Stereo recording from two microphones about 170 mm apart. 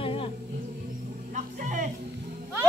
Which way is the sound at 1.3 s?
50° right (ahead or behind).